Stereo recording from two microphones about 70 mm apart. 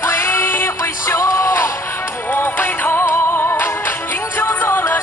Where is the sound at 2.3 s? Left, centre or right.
Left.